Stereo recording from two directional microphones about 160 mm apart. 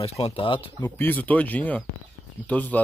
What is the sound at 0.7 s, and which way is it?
Speech, 15° left (ahead or behind).